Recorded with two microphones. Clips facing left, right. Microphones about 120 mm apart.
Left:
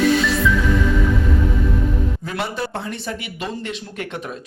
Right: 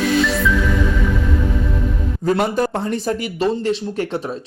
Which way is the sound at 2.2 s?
40° right (ahead or behind).